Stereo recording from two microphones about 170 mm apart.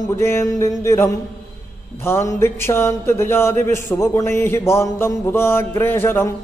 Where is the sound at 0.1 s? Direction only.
15° left (ahead or behind).